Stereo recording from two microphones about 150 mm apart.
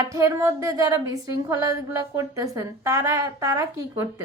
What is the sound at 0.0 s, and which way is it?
A woman's voice, 20° right (ahead or behind).